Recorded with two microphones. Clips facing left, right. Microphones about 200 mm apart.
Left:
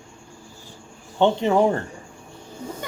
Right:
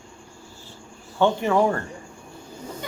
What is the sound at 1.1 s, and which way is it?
Speech, 20° left (ahead or behind).